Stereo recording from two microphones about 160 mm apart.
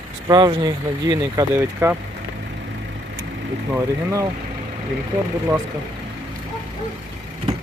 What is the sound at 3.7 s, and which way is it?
Speech, 15° right (ahead or behind).